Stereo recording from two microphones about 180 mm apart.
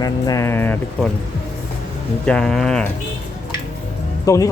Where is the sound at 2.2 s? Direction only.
5° left (ahead or behind).